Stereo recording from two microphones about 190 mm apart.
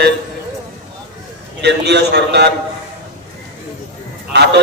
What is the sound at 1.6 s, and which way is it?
Speech, 60° right (ahead or behind).